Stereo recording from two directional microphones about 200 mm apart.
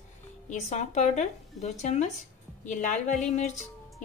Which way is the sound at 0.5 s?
35° left (ahead or behind).